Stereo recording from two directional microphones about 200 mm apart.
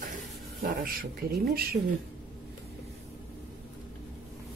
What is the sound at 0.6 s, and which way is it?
Speech, 45° right (ahead or behind).